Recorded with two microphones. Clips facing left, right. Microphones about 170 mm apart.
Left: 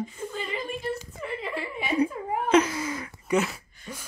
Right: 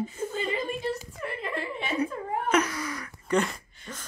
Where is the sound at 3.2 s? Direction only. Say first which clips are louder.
Left 1 dB; 5° left (ahead or behind).